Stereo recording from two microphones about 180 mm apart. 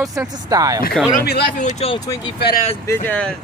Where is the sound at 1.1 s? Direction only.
60° left (ahead or behind).